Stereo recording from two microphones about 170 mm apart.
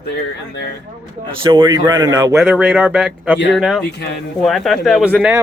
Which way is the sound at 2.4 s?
5° right (ahead or behind).